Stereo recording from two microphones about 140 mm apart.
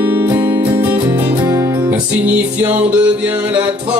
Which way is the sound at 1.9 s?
10° right (ahead or behind).